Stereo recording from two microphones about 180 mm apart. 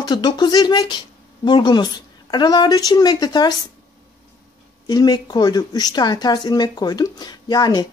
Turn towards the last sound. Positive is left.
turn(degrees=25)  # may be behind; listen again after turning